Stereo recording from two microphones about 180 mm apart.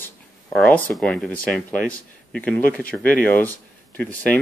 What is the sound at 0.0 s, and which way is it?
Speech, 10° left (ahead or behind).